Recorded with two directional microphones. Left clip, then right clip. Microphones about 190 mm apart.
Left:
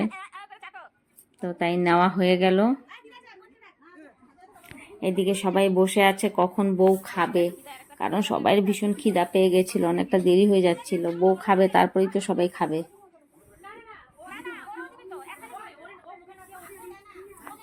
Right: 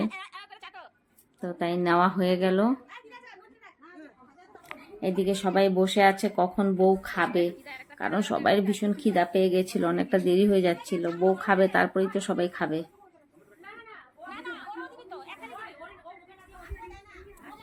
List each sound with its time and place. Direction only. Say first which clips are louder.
0.1 s a sound: left 1 dB; 10° right (ahead or behind)
1.4 s speech: left 4 dB; 10° left (ahead or behind)
4.9 s speech: left 3 dB; 5° right (ahead or behind)
9.4 s speech: left 4 dB; 10° left (ahead or behind)
14.3 s chatter: left 1 dB; 15° right (ahead or behind)